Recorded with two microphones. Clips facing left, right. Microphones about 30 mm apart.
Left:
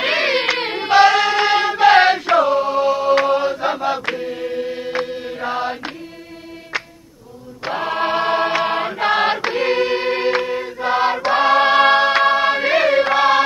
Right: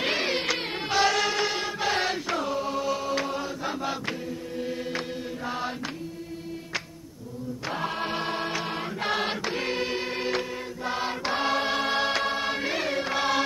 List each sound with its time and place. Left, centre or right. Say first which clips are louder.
0.0 s a sound: left 9 dB; left
0.7 s music: left 12 dB; left
1.4 s music: left 13 dB; left
3.8 s chant: left 10 dB; left
4.3 s music: left 11 dB; left
4.6 s music: left 6 dB; left
5.4 s mantra: left 10 dB; left
7.6 s chant: left 10 dB; left
9.0 s choir: left 10 dB; left
12.2 s music: left 12 dB; left
12.7 s choir: left 13 dB; left
13.1 s music: left 11 dB; left